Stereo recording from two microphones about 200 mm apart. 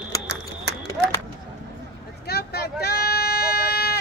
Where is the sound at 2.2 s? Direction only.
50° left (ahead or behind).